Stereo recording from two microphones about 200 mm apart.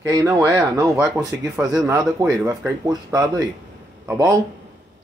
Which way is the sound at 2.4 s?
15° right (ahead or behind).